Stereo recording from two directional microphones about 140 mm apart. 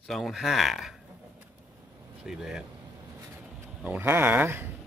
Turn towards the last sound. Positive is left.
turn(degrees=-15)  # may be behind; listen again after turning